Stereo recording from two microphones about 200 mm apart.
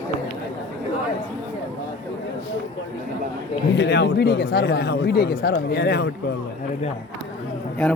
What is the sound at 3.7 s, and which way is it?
Speech, 60° left (ahead or behind).